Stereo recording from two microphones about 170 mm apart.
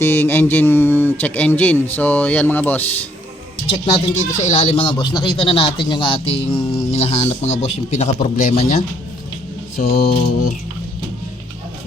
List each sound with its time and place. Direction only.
0.0 s speech: 15° left (ahead or behind)
3.9 s speech: 35° left (ahead or behind)
9.7 s mantra: 65° left (ahead or behind)